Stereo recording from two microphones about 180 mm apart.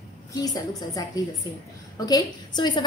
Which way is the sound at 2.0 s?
25° left (ahead or behind).